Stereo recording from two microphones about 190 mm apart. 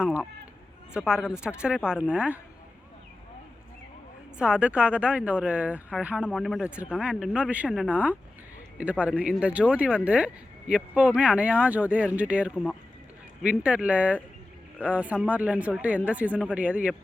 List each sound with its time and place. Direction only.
0.9 s speech: 5° right (ahead or behind)
4.4 s speech: 5° right (ahead or behind)